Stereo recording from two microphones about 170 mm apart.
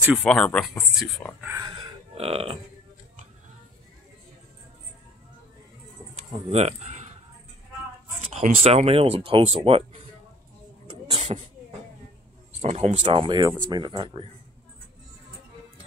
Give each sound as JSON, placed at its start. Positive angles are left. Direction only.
{"t": 0.0, "sound": "speech", "side_deg": -5}
{"t": 0.3, "sound": "speech", "side_deg": 5}
{"t": 2.1, "sound": "speech", "side_deg": -35}
{"t": 6.5, "sound": "speech", "side_deg": -40}
{"t": 8.3, "sound": "speech", "side_deg": -45}
{"t": 10.9, "sound": "a sound", "side_deg": -35}
{"t": 12.6, "sound": "speech", "side_deg": -40}